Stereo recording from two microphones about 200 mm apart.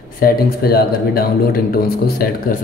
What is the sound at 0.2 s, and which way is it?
A man's voice, 50° left (ahead or behind).